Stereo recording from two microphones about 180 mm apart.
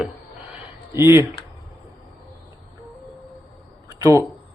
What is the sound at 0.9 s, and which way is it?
Speech, 15° right (ahead or behind).